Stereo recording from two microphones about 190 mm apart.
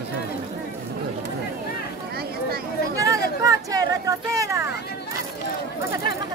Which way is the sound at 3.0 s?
15° right (ahead or behind).